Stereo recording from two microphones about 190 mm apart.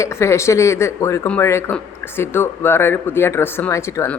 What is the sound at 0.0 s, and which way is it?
Speech, 15° left (ahead or behind).